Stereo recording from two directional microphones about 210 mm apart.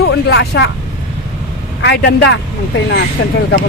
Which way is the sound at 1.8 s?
55° left (ahead or behind).